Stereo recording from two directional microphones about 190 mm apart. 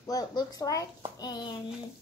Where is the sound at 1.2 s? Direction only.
20° left (ahead or behind).